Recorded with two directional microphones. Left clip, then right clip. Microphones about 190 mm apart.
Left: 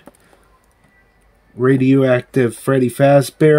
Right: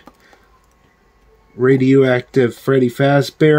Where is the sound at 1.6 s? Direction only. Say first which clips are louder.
Right 2 dB; 10° left (ahead or behind).